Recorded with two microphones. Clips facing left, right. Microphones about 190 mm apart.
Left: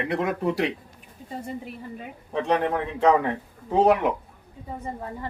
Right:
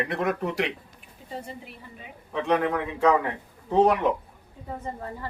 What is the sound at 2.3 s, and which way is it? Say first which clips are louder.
Speech: left 1 dB; 35° left (ahead or behind).